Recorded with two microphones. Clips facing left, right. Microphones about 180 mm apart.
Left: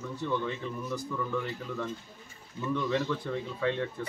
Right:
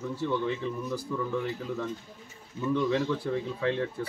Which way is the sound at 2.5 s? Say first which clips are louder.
Right 3 dB; 5° right (ahead or behind).